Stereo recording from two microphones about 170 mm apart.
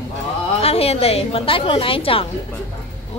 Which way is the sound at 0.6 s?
35° left (ahead or behind).